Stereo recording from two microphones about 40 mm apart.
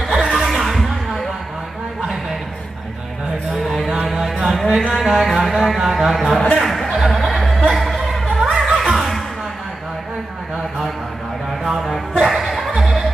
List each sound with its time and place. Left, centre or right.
0.2 s music: centre
3.6 s mantra: centre
4.1 s a sound: centre
6.6 s music: centre
12.2 s music: centre